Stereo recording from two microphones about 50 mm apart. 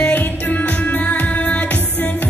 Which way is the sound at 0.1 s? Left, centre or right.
Left.